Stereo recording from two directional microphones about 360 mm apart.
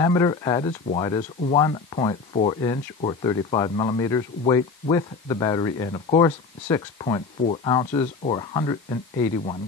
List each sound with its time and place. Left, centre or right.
0.0 s speech: centre